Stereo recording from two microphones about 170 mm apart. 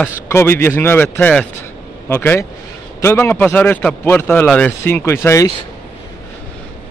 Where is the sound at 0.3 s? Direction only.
15° left (ahead or behind).